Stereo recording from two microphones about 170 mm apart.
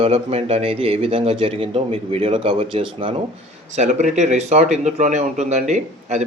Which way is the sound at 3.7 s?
45° right (ahead or behind).